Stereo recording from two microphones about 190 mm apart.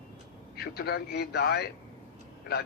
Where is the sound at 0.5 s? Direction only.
55° left (ahead or behind).